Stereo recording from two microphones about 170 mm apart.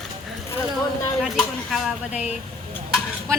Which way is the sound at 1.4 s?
Centre (ahead or behind).